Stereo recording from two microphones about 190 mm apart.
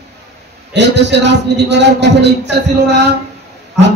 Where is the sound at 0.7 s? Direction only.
65° right (ahead or behind).